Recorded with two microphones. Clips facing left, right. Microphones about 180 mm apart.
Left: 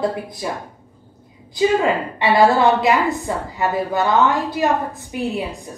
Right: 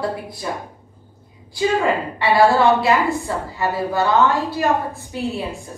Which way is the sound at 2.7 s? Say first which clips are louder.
Even; 20° left (ahead or behind).